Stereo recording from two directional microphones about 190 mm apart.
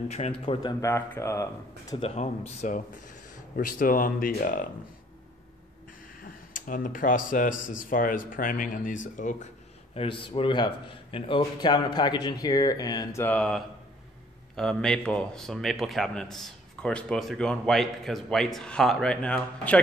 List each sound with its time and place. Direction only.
0.1 s speech: 30° left (ahead or behind); by 2.0 s 15° left (ahead or behind)
2.0 s speech: 35° left (ahead or behind)
6.5 s speech: 45° left (ahead or behind)
9.9 s a man's voice: 25° left (ahead or behind); by 19.8 s 5° left (ahead or behind)